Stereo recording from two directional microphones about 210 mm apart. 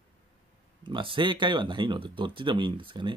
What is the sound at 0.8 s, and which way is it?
Speech, 25° right (ahead or behind).